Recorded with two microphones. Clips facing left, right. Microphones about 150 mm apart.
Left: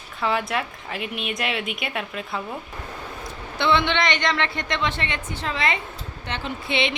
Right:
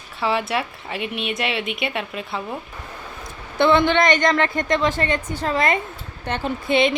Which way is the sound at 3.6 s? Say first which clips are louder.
Right 5 dB; 45° right (ahead or behind).